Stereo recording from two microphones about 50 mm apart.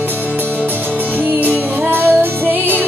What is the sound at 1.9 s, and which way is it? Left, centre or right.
Music, right.